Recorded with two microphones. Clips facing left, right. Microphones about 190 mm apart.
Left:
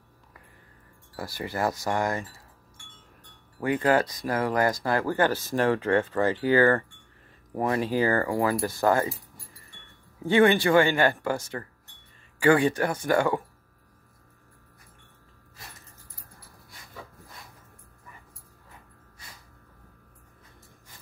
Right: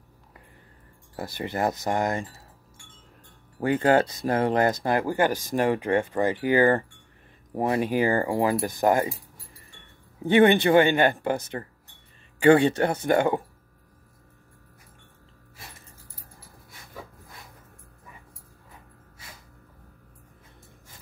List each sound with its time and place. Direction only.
1.1 s speech: 20° right (ahead or behind)
3.5 s speech: 30° right (ahead or behind)
7.8 s speech: 15° right (ahead or behind)
10.2 s speech: 20° right (ahead or behind)